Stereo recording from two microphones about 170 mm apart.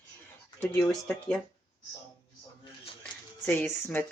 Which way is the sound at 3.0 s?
10° left (ahead or behind).